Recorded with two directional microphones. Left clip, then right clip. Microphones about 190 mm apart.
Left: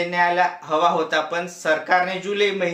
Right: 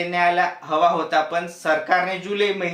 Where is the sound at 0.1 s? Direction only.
20° left (ahead or behind).